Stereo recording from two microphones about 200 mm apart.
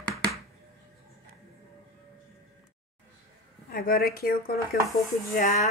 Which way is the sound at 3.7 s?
45° left (ahead or behind).